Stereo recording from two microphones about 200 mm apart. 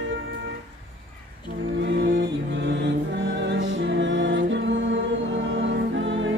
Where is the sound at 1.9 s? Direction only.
65° right (ahead or behind).